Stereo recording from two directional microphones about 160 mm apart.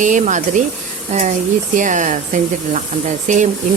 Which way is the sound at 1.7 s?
50° right (ahead or behind).